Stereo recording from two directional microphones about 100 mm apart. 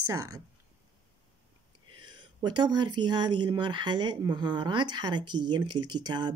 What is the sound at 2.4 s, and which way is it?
Speech, 45° right (ahead or behind).